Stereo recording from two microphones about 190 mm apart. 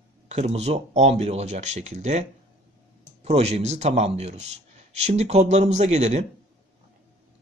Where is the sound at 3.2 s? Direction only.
35° right (ahead or behind).